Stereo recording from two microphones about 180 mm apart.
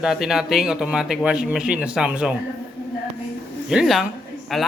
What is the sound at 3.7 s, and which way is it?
Speech, centre (ahead or behind).